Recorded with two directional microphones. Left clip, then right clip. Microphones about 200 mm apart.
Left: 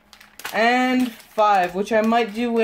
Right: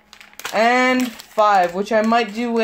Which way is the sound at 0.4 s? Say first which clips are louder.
Right 3 dB; 15° right (ahead or behind).